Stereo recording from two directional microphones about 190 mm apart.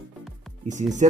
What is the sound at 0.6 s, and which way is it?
Speech, 40° right (ahead or behind).